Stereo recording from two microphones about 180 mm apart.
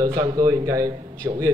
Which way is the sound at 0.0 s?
25° right (ahead or behind).